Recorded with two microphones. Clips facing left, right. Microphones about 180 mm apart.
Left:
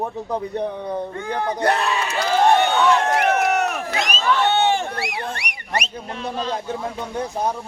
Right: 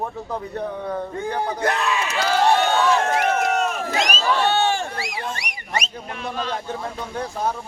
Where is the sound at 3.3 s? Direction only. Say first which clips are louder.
Left 2 dB; 65° left (ahead or behind).